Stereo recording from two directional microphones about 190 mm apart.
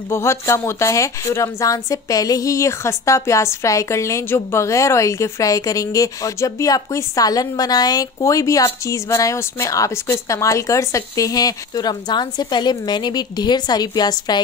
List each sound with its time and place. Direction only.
0.1 s a woman's voice: 15° left (ahead or behind)